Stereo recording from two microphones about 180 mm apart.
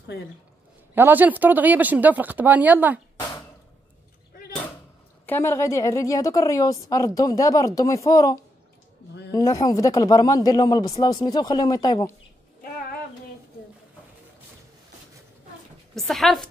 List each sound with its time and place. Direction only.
0.9 s speech: 10° right (ahead or behind)
5.2 s a woman's voice: 10° left (ahead or behind)
15.9 s speech: centre (ahead or behind)